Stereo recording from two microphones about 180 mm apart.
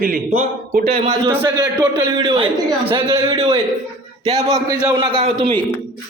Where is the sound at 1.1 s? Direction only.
20° right (ahead or behind).